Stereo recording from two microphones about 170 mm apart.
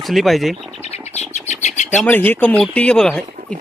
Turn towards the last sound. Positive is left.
turn(degrees=5)  # may be behind; listen again after turning